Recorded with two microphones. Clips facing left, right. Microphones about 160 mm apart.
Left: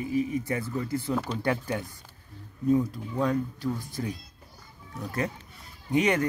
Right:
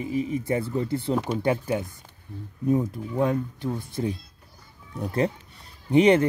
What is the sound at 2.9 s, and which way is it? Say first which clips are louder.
Speech: right 3 dB; 20° right (ahead or behind).